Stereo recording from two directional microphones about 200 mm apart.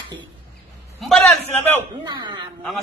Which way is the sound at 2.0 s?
25° right (ahead or behind).